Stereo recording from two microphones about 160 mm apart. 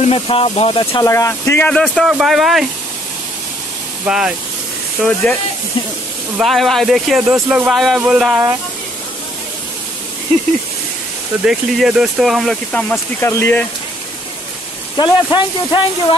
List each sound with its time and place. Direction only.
0.0 s speech: 35° left (ahead or behind)
1.0 s speech: 20° left (ahead or behind); by 2.6 s centre (ahead or behind)
4.0 s speech: 5° right (ahead or behind)
6.3 s speech: centre (ahead or behind)
11.4 s speech: 5° right (ahead or behind)
12.9 s speech: 15° left (ahead or behind)
15.0 s speech: 30° left (ahead or behind)